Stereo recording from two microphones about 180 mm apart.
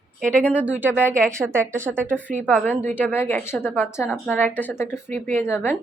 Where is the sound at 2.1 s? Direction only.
10° left (ahead or behind).